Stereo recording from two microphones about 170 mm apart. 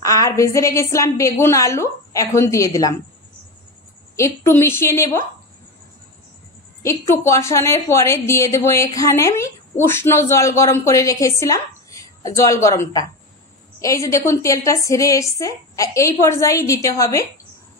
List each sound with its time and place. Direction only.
0.0 s a woman's voice: 20° left (ahead or behind)
4.5 s a woman's voice: 15° left (ahead or behind)
6.8 s a woman's voice: 15° left (ahead or behind)